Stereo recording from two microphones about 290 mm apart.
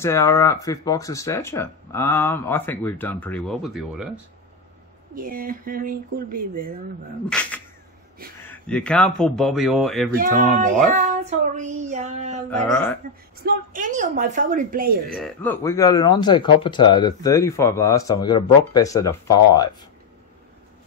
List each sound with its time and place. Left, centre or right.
0.0 s speech: centre
5.1 s speech: right
7.2 s a sound: centre
8.4 s speech: centre
10.1 s speech: right
12.4 s speech: centre
13.4 s speech: right
15.1 s speech: centre